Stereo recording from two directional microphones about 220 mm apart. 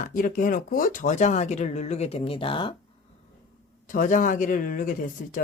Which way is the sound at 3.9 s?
35° left (ahead or behind).